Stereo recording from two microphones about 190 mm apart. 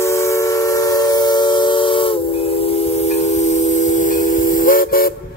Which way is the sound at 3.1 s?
35° left (ahead or behind).